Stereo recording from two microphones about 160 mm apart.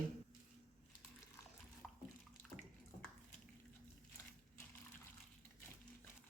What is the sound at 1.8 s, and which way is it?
Water, 10° left (ahead or behind).